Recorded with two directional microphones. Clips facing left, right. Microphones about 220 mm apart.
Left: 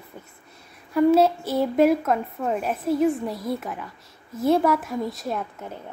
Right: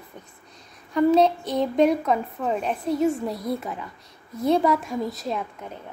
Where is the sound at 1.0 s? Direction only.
5° left (ahead or behind).